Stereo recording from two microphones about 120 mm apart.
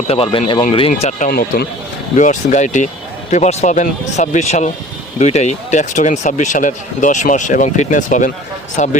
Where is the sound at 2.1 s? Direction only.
90° left.